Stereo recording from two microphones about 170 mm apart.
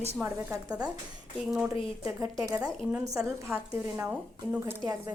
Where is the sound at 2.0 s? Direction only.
20° right (ahead or behind).